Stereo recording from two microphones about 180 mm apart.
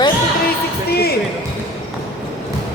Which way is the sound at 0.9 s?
60° left (ahead or behind).